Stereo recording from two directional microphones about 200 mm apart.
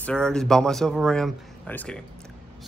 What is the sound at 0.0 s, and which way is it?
A man's voice, 5° left (ahead or behind).